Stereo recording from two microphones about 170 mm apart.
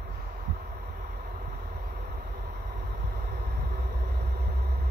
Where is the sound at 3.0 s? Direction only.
70° right (ahead or behind).